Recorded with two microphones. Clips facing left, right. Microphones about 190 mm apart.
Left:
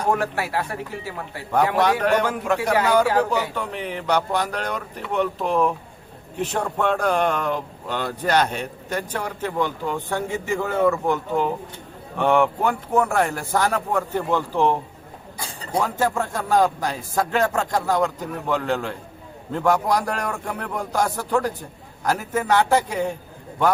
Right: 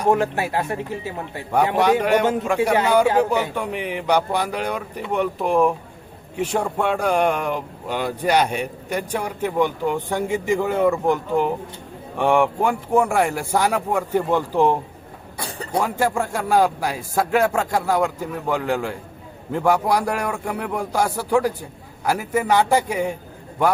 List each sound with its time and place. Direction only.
0.1 s speech: 20° right (ahead or behind)
2.2 s speech: 25° right (ahead or behind)
15.8 s speech: 10° right (ahead or behind)